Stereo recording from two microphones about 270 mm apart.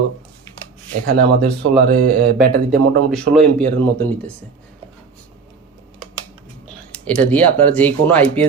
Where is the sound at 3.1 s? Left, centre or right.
Centre.